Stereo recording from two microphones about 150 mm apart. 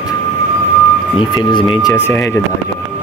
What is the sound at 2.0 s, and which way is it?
Speech, 15° left (ahead or behind).